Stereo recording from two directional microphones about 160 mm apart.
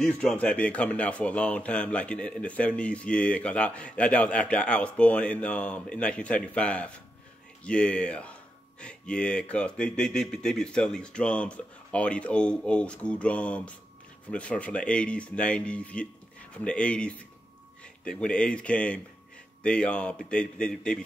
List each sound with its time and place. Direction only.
0.0 s speech: 5° left (ahead or behind)